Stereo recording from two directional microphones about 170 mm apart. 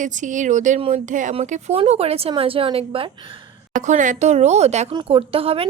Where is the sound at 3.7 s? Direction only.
45° right (ahead or behind).